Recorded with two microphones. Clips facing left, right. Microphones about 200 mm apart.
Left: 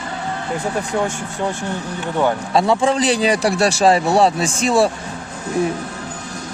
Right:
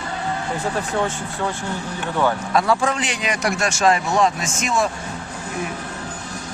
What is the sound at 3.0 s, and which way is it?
Speech, 35° left (ahead or behind).